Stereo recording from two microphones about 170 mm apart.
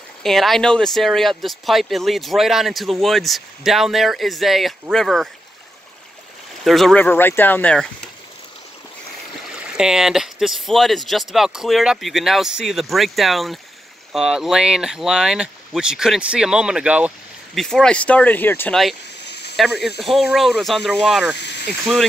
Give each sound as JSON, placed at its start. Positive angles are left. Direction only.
{"t": 0.2, "sound": "speech", "side_deg": 0}
{"t": 6.6, "sound": "speech", "side_deg": 0}
{"t": 9.6, "sound": "speech", "side_deg": -5}
{"t": 17.6, "sound": "speech", "side_deg": 5}
{"t": 19.2, "sound": "a sound", "side_deg": 80}
{"t": 19.5, "sound": "speech", "side_deg": 0}
{"t": 21.4, "sound": "speech", "side_deg": 85}